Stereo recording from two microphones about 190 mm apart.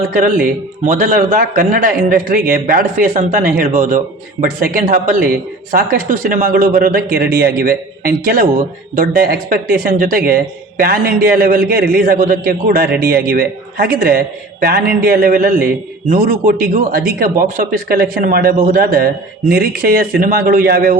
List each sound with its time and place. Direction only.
0.1 s speech: 45° right (ahead or behind)